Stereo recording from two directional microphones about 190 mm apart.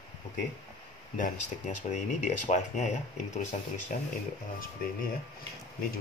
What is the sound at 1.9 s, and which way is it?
Speech, 40° left (ahead or behind).